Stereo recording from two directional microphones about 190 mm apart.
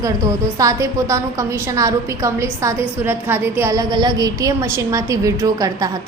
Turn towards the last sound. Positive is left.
turn(degrees=-20)  # may be behind; listen again after turning